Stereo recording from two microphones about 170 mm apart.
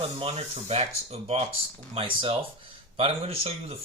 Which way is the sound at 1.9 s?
35° right (ahead or behind).